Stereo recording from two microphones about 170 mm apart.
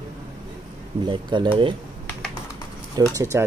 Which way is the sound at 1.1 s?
30° right (ahead or behind).